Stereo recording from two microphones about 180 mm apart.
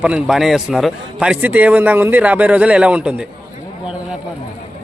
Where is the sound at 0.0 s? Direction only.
5° right (ahead or behind).